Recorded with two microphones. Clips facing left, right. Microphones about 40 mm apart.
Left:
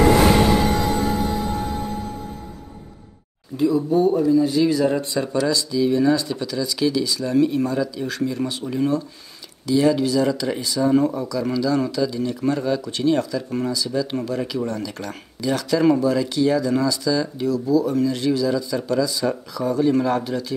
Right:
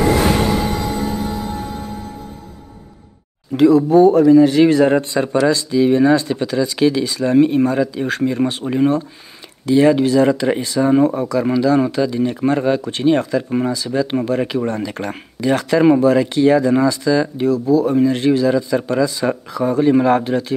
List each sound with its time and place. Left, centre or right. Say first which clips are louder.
3.5 s speech: right 8 dB; right